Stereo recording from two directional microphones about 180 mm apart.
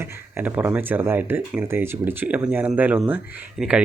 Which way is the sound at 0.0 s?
10° right (ahead or behind).